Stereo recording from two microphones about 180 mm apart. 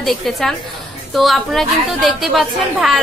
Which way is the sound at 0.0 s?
Centre (ahead or behind).